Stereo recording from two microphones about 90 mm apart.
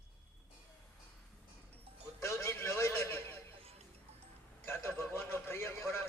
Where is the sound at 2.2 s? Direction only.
30° left (ahead or behind).